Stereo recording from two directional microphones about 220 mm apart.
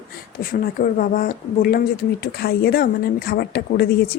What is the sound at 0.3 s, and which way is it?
Speech, 40° left (ahead or behind).